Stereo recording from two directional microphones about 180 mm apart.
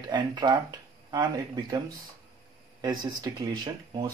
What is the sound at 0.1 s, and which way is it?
Speech, 25° right (ahead or behind).